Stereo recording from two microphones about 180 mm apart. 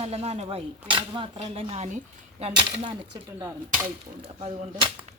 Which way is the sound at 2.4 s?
30° right (ahead or behind).